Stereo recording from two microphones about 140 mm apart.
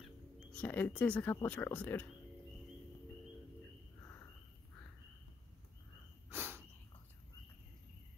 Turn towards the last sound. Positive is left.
turn(degrees=-15)  # may be behind; listen again after turning